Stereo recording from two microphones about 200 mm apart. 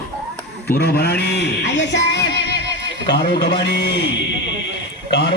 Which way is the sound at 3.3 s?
50° left (ahead or behind).